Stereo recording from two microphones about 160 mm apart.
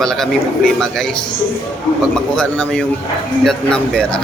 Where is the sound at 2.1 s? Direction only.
5° left (ahead or behind).